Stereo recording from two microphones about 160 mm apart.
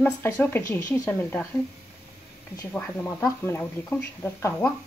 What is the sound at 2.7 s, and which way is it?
Speech, 15° left (ahead or behind).